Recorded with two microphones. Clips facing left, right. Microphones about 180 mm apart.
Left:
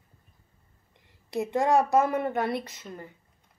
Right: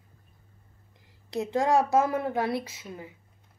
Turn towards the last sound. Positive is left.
turn(degrees=-5)  # may be behind; listen again after turning